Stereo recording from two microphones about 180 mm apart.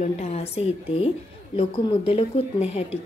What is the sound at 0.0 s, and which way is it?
Speech, 35° left (ahead or behind).